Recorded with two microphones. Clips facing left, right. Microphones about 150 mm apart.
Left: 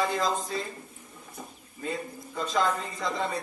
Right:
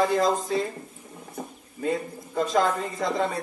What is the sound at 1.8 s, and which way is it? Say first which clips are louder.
A man's voice: right 6 dB; 50° right (ahead or behind).